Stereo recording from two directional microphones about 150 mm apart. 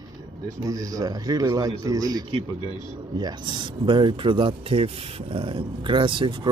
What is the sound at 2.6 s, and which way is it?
Speech, 30° left (ahead or behind).